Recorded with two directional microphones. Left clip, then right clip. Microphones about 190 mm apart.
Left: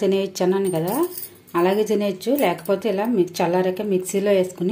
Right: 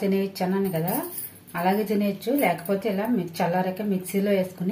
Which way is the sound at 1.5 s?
45° left (ahead or behind).